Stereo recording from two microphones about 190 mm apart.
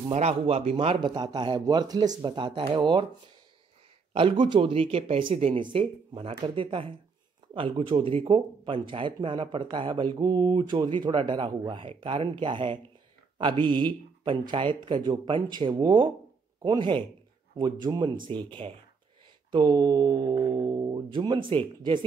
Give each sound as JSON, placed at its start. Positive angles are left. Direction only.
{"t": 0.1, "sound": "speech", "side_deg": -35}
{"t": 4.1, "sound": "speech", "side_deg": -30}